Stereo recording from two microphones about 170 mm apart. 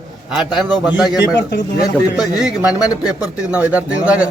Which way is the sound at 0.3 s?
5° right (ahead or behind).